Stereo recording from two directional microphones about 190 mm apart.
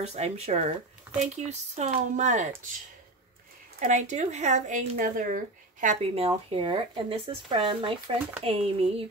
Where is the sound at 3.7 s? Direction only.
40° right (ahead or behind).